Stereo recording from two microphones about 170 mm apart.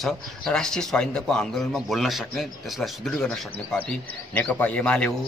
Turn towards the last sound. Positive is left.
turn(degrees=5)  # may be behind; listen again after turning